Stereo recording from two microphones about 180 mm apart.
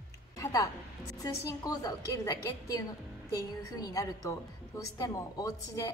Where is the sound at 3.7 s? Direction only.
20° left (ahead or behind).